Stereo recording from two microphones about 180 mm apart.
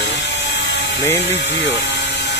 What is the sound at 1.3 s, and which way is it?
Speech, 85° left.